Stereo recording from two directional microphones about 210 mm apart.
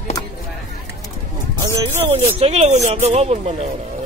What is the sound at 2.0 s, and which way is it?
Speech, 30° right (ahead or behind).